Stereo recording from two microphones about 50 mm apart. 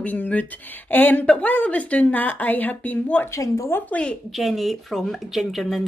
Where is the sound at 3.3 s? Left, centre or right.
Left.